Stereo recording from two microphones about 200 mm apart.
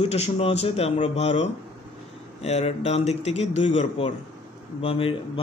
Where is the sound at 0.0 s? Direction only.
30° left (ahead or behind).